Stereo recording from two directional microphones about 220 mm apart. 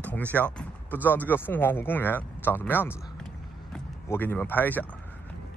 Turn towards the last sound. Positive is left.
turn(degrees=5)  # may be behind; listen again after turning